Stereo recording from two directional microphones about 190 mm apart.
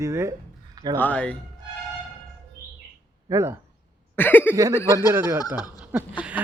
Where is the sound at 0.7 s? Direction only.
20° right (ahead or behind).